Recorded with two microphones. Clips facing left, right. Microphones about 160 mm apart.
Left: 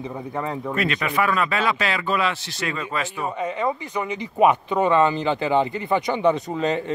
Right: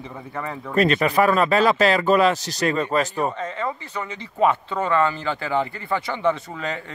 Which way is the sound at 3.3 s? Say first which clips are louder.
Left 3 dB; 15° left (ahead or behind).